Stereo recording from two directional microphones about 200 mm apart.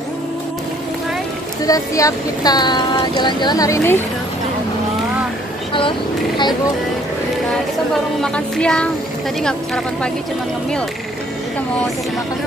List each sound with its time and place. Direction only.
1.7 s speech: 15° left (ahead or behind)
5.7 s speech: 25° left (ahead or behind)
8.2 s a sound: 5° left (ahead or behind)